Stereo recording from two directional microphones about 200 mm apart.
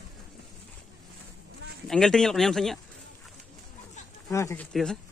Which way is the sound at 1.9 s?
Centre (ahead or behind).